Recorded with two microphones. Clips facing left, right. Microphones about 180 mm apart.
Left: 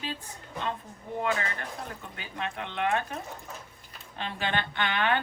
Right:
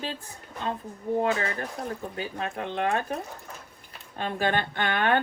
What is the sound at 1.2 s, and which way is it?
Speech, 35° right (ahead or behind).